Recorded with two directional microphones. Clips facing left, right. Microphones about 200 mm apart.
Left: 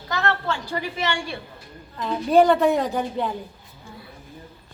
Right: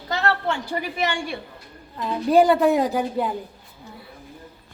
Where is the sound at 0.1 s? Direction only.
25° right (ahead or behind).